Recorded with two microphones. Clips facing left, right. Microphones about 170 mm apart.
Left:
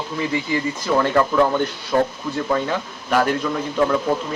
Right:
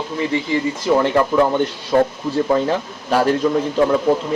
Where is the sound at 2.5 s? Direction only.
30° right (ahead or behind).